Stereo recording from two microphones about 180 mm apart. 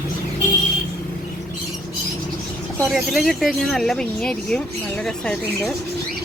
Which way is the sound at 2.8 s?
Centre (ahead or behind).